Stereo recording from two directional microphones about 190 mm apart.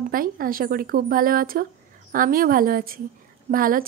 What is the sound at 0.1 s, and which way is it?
A woman's voice, 50° right (ahead or behind).